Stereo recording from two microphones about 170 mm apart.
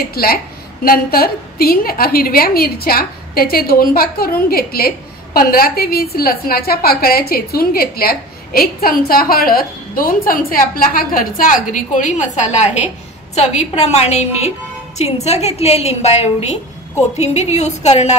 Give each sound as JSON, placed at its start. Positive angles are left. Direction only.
{"t": 0.0, "sound": "a woman's voice", "side_deg": 65}